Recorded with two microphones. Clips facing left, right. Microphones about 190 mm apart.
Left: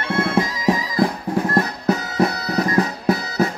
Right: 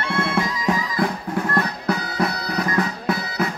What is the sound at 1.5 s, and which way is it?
Music, 25° left (ahead or behind).